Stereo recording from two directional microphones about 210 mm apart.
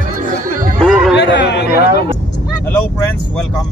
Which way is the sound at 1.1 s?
55° left (ahead or behind).